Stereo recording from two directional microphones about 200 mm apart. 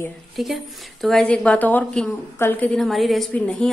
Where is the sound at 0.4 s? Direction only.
Centre (ahead or behind).